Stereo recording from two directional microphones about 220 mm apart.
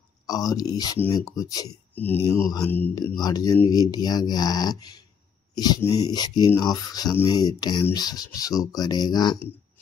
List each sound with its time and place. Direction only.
0.3 s speech: 15° left (ahead or behind)